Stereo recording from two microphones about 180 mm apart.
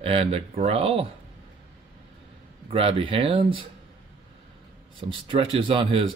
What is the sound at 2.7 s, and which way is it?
Speech, 30° right (ahead or behind).